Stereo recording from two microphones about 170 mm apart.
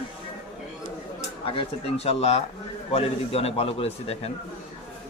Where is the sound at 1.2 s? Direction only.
35° left (ahead or behind).